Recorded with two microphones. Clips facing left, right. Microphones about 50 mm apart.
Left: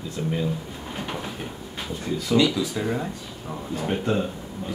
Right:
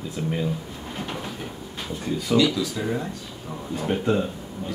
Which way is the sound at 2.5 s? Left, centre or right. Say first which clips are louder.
Left 1 dB; centre.